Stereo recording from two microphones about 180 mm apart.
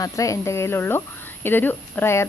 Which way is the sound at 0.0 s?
15° left (ahead or behind).